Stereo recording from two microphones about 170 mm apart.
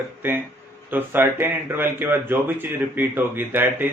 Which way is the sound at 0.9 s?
10° right (ahead or behind).